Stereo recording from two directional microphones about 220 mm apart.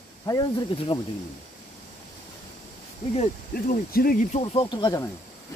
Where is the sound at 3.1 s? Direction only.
40° left (ahead or behind); by 5.1 s 15° left (ahead or behind).